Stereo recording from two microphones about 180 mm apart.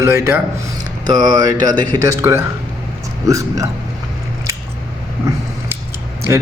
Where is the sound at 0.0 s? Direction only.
15° right (ahead or behind).